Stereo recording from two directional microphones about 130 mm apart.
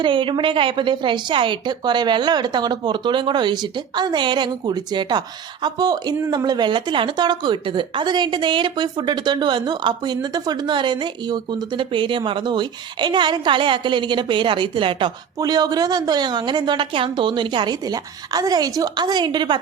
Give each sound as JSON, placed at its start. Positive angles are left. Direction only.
{"t": 0.0, "sound": "a woman's voice", "side_deg": -40}
{"t": 15.4, "sound": "a woman's voice", "side_deg": -30}